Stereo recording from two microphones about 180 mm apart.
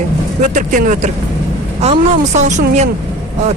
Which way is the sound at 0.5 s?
45° right (ahead or behind).